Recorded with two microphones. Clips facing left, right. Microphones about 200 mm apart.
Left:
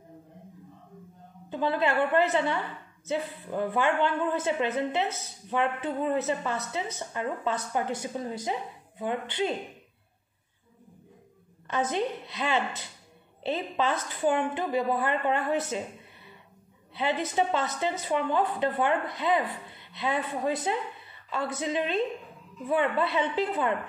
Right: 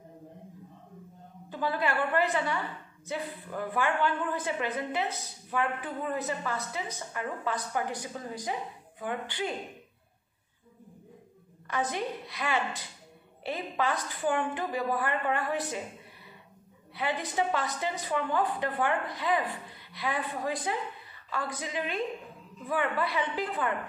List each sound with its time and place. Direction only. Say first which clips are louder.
1.5 s speech: left 4 dB; 20° left (ahead or behind)
11.6 s speech: left 4 dB; 25° left (ahead or behind)
16.9 s speech: left 4 dB; 25° left (ahead or behind)